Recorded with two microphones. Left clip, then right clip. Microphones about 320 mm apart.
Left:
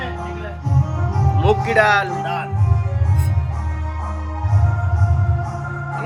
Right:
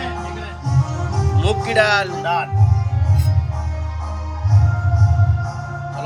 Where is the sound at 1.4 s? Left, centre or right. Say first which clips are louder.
Left 2 dB; centre.